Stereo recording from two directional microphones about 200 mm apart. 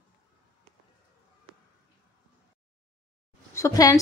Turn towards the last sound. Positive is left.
turn(degrees=15)  # may be behind; listen again after turning